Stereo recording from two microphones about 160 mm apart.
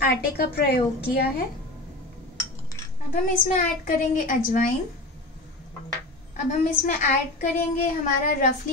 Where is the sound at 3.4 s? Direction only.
50° left (ahead or behind).